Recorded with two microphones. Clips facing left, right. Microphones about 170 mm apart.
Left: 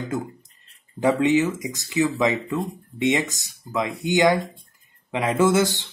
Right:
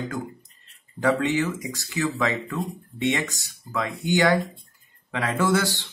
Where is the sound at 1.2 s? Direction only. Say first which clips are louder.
Left 5 dB; 20° left (ahead or behind).